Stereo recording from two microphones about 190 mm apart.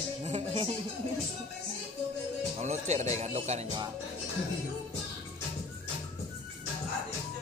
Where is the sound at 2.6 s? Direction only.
35° right (ahead or behind).